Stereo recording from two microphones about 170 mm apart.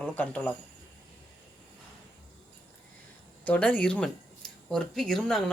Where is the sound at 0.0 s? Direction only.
10° left (ahead or behind).